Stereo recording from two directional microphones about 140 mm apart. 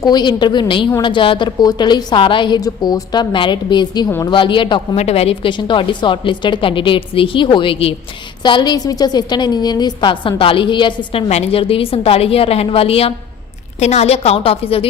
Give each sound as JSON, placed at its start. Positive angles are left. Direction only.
{"t": 0.0, "sound": "a woman's voice", "side_deg": 30}
{"t": 4.9, "sound": "a woman's voice", "side_deg": 45}